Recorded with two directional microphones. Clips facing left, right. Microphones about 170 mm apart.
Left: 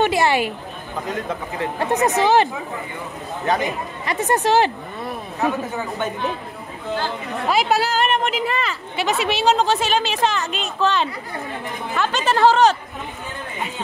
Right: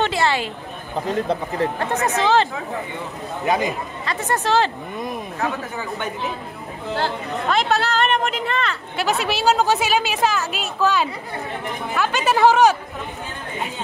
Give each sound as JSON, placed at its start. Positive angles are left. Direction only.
{"t": 0.0, "sound": "a sound", "side_deg": 15}
{"t": 0.9, "sound": "speech", "side_deg": -35}
{"t": 1.8, "sound": "speech", "side_deg": 15}
{"t": 3.4, "sound": "speech", "side_deg": -10}
{"t": 4.0, "sound": "speech", "side_deg": 15}
{"t": 7.4, "sound": "speech", "side_deg": 5}